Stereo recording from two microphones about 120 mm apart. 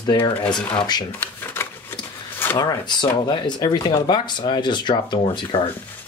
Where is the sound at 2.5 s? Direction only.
40° left (ahead or behind).